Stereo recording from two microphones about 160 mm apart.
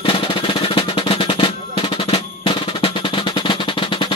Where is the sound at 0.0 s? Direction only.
35° left (ahead or behind).